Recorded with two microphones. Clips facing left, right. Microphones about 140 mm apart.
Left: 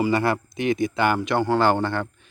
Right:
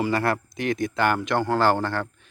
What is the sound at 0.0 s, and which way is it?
Speech, centre (ahead or behind).